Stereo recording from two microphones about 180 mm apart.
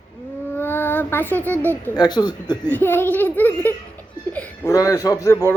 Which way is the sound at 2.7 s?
10° left (ahead or behind).